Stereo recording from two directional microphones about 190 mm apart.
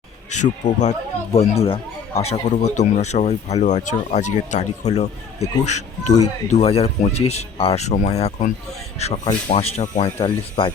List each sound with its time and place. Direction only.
0.3 s speech: 40° left (ahead or behind)